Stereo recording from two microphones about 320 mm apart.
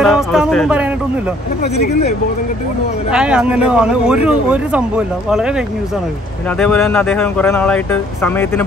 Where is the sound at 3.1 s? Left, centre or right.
Centre.